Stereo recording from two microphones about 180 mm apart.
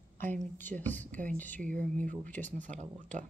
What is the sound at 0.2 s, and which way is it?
A woman's voice, 10° left (ahead or behind).